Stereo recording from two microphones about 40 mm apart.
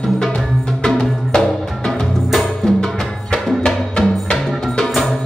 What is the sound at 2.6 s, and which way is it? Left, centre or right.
Music, centre.